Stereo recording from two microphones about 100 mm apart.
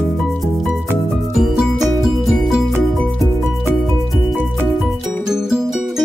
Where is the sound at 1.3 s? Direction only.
5° right (ahead or behind).